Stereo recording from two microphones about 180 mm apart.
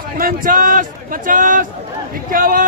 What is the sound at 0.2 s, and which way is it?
Speech, 50° right (ahead or behind).